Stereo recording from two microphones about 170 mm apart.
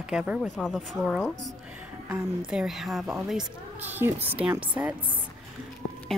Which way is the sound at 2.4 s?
5° right (ahead or behind).